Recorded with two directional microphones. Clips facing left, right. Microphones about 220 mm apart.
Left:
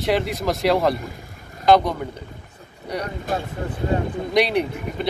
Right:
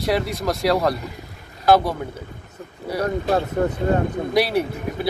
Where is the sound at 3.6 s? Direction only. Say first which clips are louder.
Right 8 dB; 50° right (ahead or behind).